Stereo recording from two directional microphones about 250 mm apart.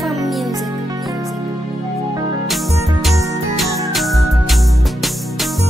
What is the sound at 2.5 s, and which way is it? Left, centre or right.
Music, centre.